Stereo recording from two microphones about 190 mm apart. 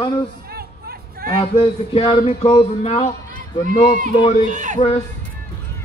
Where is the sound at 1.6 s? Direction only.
30° left (ahead or behind).